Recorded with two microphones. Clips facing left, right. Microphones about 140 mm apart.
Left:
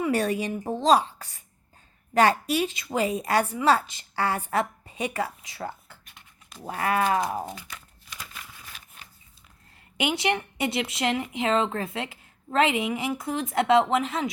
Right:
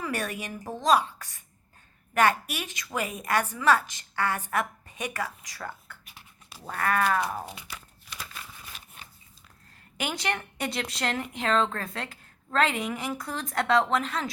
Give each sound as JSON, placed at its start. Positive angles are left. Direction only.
{"t": 0.0, "sound": "a woman's voice", "side_deg": 30}
{"t": 6.1, "sound": "a sound", "side_deg": -10}
{"t": 6.7, "sound": "speech", "side_deg": 20}
{"t": 10.0, "sound": "speech", "side_deg": 20}